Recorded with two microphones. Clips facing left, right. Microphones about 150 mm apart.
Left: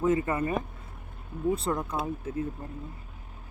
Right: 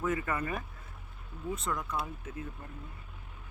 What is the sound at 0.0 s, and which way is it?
Speech, 25° left (ahead or behind).